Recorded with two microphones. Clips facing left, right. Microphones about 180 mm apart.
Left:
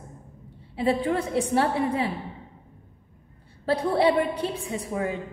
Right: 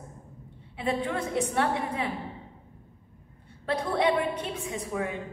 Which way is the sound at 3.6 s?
30° left (ahead or behind).